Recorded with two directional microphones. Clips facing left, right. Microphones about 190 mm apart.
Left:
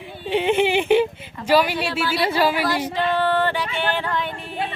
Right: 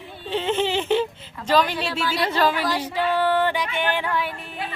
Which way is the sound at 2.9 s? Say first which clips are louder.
Right 2 dB; 10° right (ahead or behind).